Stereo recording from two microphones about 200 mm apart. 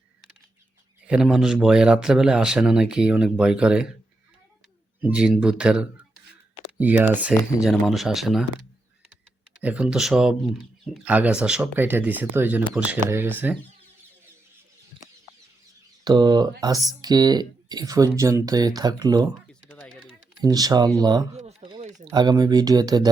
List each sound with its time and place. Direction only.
1.0 s speech: 5° right (ahead or behind)
5.0 s speech: 5° right (ahead or behind)
9.6 s speech: 5° right (ahead or behind)
16.0 s speech: 20° right (ahead or behind)
19.7 s typing: 5° left (ahead or behind)
20.1 s speech: 20° right (ahead or behind)
21.3 s a sound: 30° right (ahead or behind)
22.1 s speech: 20° right (ahead or behind)